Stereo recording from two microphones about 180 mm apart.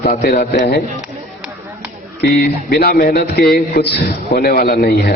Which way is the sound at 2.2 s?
60° left (ahead or behind).